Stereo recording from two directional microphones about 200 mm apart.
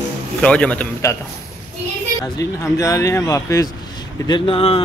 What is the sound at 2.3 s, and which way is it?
Speech, 15° left (ahead or behind).